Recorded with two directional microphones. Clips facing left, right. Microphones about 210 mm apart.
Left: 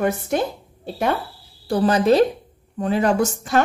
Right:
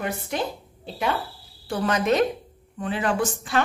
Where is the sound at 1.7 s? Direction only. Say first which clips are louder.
Left 6 dB; 35° left (ahead or behind).